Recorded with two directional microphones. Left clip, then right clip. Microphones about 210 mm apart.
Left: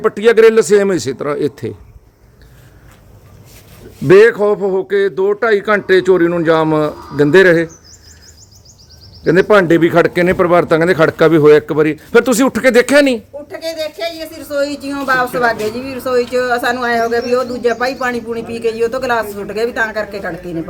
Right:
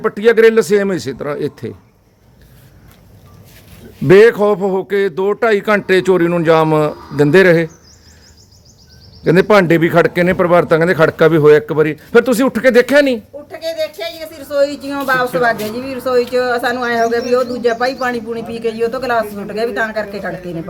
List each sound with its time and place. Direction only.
0.0 s speech: 10° left (ahead or behind)
4.0 s a man's voice: 15° right (ahead or behind)
9.2 s speech: 10° right (ahead or behind); by 20.5 s 10° left (ahead or behind)